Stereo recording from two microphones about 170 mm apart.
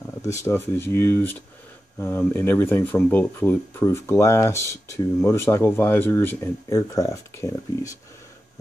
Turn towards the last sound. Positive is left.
turn(degrees=20)  # may be behind; listen again after turning